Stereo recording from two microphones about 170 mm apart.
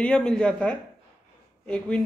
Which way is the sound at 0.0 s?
5° left (ahead or behind).